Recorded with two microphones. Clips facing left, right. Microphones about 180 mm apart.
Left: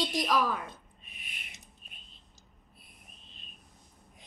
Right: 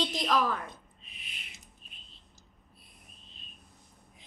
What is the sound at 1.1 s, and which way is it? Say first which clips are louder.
Owl: left 1 dB; 50° left (ahead or behind).